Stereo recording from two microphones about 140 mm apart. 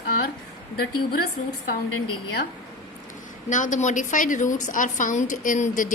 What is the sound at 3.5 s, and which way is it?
A woman's voice, 65° left (ahead or behind).